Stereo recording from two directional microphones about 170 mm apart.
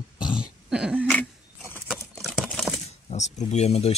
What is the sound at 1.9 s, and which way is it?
Typing, 5° right (ahead or behind).